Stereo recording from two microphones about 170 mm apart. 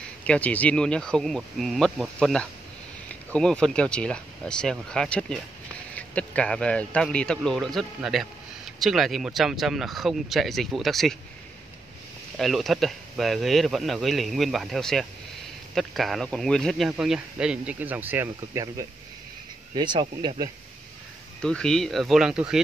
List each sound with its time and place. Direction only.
0.2 s speech: 10° left (ahead or behind)
12.4 s speech: centre (ahead or behind); by 20.4 s 25° right (ahead or behind)
21.4 s speech: 5° left (ahead or behind)